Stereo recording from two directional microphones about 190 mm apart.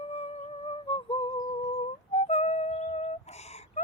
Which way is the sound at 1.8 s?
35° left (ahead or behind).